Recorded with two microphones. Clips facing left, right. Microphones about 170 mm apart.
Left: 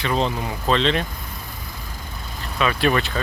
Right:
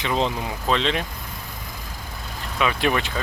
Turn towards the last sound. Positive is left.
turn(degrees=-15)  # may be behind; listen again after turning